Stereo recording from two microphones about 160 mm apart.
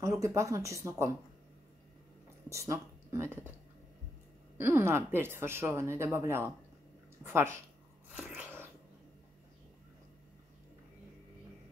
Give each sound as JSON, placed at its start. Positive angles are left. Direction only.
{"t": 0.0, "sound": "speech", "side_deg": -20}
{"t": 2.5, "sound": "speech", "side_deg": -15}
{"t": 4.6, "sound": "speech", "side_deg": -15}
{"t": 8.2, "sound": "sneeze", "side_deg": -10}